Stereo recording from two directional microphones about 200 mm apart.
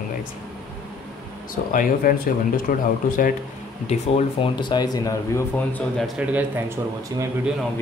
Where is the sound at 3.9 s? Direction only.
25° left (ahead or behind).